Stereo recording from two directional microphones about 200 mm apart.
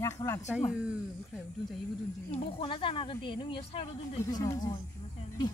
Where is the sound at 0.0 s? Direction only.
15° left (ahead or behind).